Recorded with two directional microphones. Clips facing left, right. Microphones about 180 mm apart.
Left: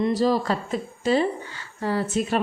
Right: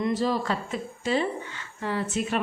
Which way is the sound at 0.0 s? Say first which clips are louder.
Left 4 dB; 35° left (ahead or behind).